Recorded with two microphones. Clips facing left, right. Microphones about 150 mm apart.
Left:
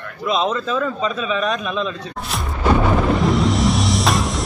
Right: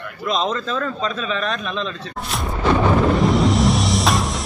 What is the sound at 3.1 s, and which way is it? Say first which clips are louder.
Music: right 1 dB; centre (ahead or behind).